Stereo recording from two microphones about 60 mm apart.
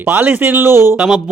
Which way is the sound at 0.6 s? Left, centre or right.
Right.